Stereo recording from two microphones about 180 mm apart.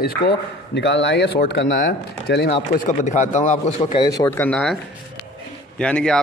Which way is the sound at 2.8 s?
40° left (ahead or behind).